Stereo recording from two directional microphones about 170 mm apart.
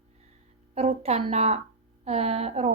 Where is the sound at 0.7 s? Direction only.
35° right (ahead or behind).